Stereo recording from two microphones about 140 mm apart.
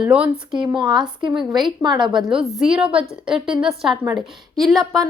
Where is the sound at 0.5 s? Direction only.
35° right (ahead or behind).